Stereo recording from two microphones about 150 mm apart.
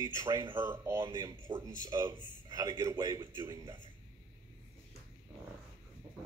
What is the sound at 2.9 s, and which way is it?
Speech, 30° right (ahead or behind).